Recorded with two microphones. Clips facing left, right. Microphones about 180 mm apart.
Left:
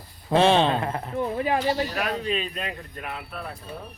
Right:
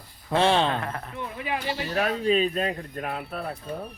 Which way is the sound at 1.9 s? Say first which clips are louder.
Right 4 dB; 35° right (ahead or behind).